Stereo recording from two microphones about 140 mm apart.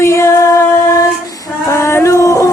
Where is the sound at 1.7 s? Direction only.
20° left (ahead or behind).